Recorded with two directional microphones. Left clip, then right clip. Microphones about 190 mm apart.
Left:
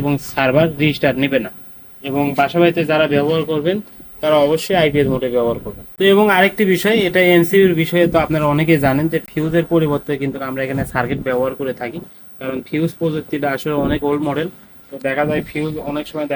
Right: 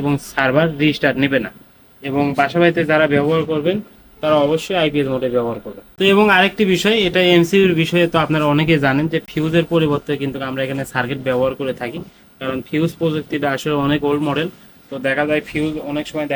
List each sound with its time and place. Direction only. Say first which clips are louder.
0.0 s speech: left 1 dB; 20° left (ahead or behind)